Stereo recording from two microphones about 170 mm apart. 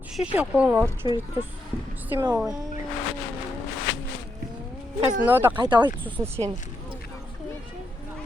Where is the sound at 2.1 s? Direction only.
15° right (ahead or behind).